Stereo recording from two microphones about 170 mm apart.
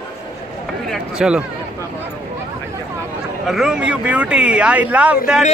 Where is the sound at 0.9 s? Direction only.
5° right (ahead or behind).